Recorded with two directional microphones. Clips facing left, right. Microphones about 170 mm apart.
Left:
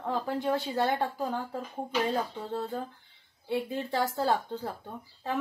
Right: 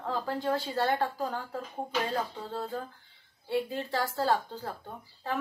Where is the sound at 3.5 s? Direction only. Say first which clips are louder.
Even; 20° left (ahead or behind).